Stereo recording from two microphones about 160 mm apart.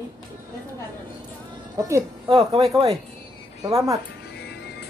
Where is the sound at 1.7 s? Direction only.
20° right (ahead or behind).